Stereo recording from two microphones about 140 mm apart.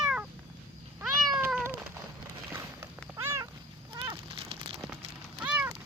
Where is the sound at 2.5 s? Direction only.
15° right (ahead or behind).